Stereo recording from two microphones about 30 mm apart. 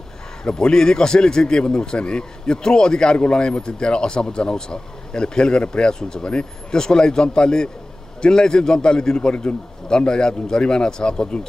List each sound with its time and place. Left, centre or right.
0.4 s a man's voice: left
9.3 s speech: left
9.8 s a man's voice: left